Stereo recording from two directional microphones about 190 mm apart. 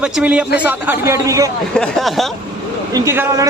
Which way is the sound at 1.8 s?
Centre (ahead or behind).